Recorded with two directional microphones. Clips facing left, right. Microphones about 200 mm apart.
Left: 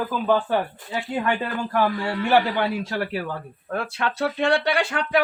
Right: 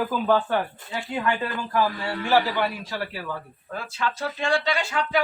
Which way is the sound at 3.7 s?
60° left (ahead or behind).